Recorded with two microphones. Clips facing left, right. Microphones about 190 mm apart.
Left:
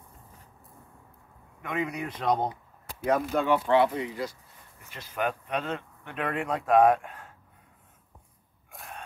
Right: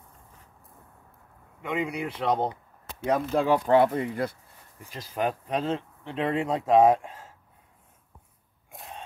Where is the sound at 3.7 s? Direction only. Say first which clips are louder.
Right 2 dB; 50° right (ahead or behind).